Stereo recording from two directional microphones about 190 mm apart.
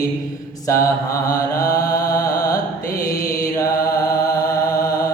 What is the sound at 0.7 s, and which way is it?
Mantra, 15° left (ahead or behind).